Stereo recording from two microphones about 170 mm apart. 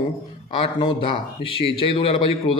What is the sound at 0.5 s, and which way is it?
A man's voice, 30° left (ahead or behind).